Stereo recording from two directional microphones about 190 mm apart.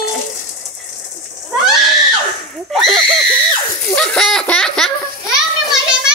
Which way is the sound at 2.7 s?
Centre (ahead or behind).